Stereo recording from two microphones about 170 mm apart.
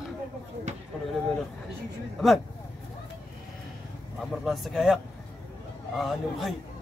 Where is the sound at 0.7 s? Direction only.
45° right (ahead or behind).